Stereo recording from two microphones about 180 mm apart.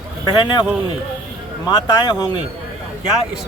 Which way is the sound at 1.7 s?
25° left (ahead or behind).